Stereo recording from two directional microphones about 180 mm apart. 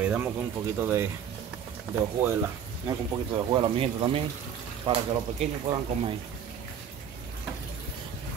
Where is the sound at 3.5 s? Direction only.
30° right (ahead or behind).